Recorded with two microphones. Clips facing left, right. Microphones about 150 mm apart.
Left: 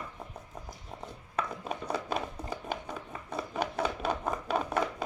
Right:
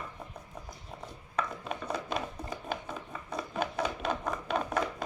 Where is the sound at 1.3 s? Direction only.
5° left (ahead or behind).